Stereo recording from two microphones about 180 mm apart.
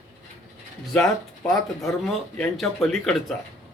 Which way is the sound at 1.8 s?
5° left (ahead or behind).